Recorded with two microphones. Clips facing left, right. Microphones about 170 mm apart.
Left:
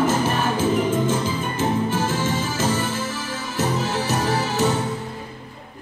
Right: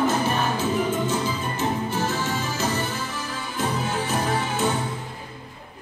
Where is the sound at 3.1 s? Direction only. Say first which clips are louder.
Left 3 dB; 90° left.